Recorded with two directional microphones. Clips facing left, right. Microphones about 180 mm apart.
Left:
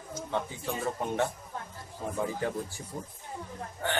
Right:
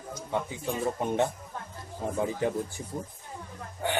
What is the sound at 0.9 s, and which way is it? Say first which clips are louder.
Speech: right 3 dB; 20° right (ahead or behind).